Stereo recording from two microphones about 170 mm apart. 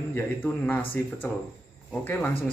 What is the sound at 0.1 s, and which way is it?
Speech, 10° left (ahead or behind).